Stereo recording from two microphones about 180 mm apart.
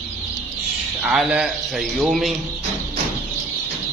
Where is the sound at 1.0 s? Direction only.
5° right (ahead or behind).